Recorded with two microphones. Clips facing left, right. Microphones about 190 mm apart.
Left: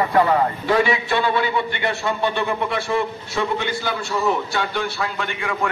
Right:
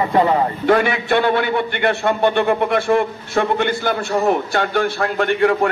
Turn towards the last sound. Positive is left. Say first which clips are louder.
# right 9 dB
turn(degrees=-45)  # may be behind; listen again after turning